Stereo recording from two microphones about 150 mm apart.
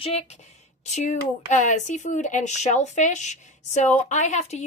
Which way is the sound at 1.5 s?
55° left (ahead or behind).